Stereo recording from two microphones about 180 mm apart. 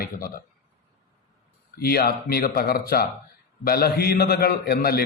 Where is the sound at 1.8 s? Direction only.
60° left (ahead or behind).